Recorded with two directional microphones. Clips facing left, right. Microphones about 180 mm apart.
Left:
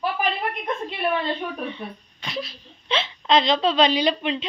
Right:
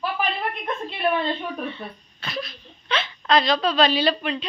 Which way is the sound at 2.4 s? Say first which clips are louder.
Left 2 dB; 25° left (ahead or behind).